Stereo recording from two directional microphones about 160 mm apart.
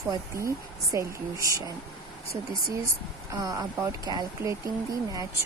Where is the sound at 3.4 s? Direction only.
25° right (ahead or behind).